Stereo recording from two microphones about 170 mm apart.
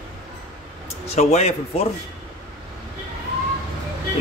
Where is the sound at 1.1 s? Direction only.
40° left (ahead or behind).